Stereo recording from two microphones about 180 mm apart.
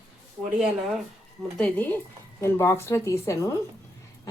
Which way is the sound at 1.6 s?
10° left (ahead or behind).